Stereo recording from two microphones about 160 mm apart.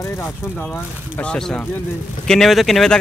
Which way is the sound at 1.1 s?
5° left (ahead or behind).